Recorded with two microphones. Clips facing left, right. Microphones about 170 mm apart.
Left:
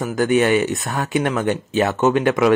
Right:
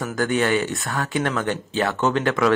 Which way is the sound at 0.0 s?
20° left (ahead or behind).